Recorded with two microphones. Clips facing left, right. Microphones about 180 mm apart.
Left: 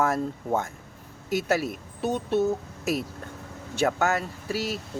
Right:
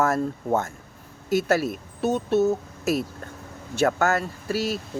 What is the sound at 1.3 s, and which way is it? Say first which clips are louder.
Speech: right 4 dB; 15° left (ahead or behind).